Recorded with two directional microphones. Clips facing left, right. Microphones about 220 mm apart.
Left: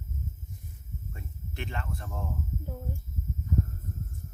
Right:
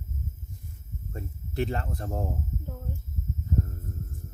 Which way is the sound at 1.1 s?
35° right (ahead or behind).